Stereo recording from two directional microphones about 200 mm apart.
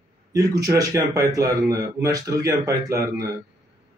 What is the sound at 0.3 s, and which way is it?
Speech, 15° right (ahead or behind).